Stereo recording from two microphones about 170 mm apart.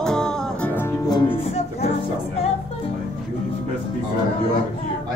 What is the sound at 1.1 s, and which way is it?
Music, 30° left (ahead or behind).